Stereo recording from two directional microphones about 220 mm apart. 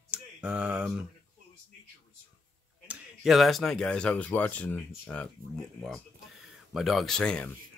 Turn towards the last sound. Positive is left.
turn(degrees=5)  # may be behind; listen again after turning